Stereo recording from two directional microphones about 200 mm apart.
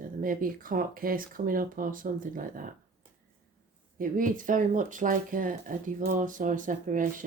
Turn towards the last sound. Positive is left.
turn(degrees=-40)  # may be behind; listen again after turning